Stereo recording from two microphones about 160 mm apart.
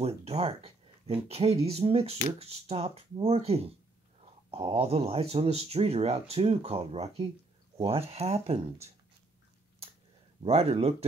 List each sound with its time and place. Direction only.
0.2 s speech: 40° right (ahead or behind)
10.4 s speech: 40° right (ahead or behind)